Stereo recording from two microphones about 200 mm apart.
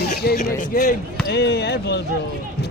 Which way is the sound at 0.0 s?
55° left (ahead or behind).